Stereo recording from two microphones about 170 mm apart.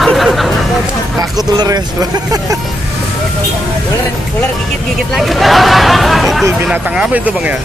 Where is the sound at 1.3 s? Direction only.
20° right (ahead or behind).